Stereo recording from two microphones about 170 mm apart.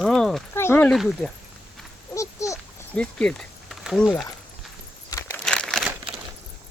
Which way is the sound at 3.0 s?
5° left (ahead or behind).